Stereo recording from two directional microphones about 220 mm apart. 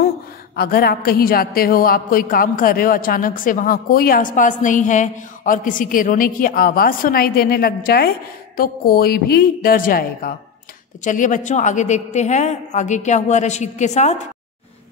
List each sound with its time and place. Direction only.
0.6 s a woman's voice: 45° left (ahead or behind)